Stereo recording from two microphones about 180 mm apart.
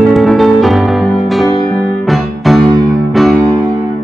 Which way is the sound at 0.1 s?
Centre (ahead or behind).